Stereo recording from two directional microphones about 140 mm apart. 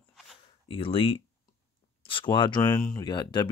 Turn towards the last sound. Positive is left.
turn(degrees=30)  # may be behind; listen again after turning